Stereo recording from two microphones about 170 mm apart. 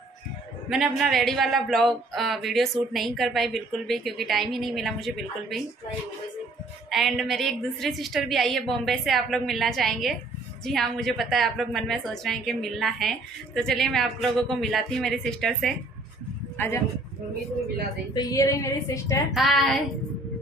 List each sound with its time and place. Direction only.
0.7 s a man's voice: centre (ahead or behind)
6.9 s a man's voice: centre (ahead or behind)
18.1 s a woman's voice: 20° left (ahead or behind)
19.3 s a man's voice: centre (ahead or behind)